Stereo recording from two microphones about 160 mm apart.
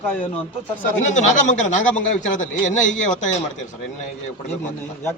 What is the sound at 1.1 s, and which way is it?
Speech, 50° left (ahead or behind).